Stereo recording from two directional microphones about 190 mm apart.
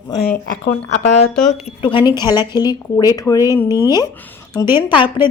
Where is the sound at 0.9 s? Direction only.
40° left (ahead or behind).